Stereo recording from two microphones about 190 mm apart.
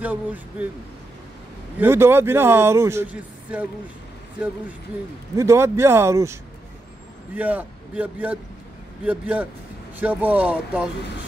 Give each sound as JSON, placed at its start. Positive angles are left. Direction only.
{"t": 0.0, "sound": "a man's voice", "side_deg": -10}
{"t": 1.8, "sound": "a man's voice", "side_deg": -10}
{"t": 5.3, "sound": "a man's voice", "side_deg": -15}
{"t": 7.3, "sound": "a man's voice", "side_deg": -10}